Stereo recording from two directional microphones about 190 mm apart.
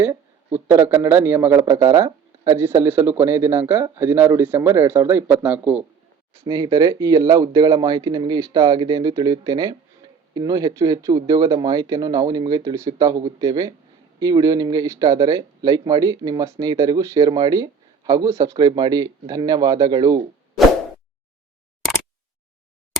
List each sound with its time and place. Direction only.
0.0 s speech: 10° right (ahead or behind)
6.4 s speech: 20° right (ahead or behind)